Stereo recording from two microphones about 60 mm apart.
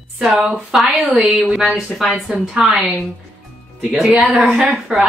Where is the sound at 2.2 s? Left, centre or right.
Centre.